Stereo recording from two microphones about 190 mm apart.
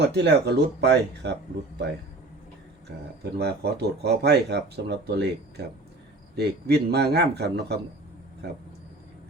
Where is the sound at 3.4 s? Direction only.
60° right (ahead or behind).